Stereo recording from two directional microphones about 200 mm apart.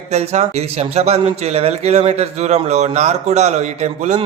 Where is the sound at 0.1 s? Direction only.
35° right (ahead or behind).